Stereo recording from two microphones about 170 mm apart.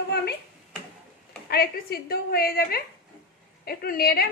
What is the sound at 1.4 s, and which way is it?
A woman's voice, 65° left (ahead or behind).